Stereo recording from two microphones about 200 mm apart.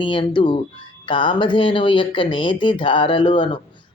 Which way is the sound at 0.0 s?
25° left (ahead or behind).